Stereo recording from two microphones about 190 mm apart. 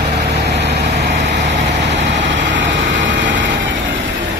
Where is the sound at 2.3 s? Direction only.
70° right (ahead or behind).